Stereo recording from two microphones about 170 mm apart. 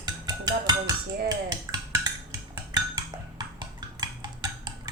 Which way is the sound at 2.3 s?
20° right (ahead or behind).